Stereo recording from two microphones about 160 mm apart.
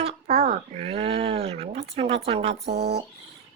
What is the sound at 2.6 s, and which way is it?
Speech, 90° right.